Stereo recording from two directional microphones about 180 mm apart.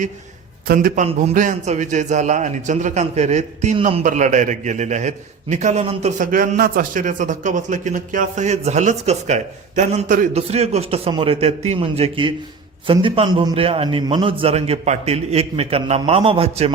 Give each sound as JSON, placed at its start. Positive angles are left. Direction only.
{"t": 0.7, "sound": "a man's voice", "side_deg": -50}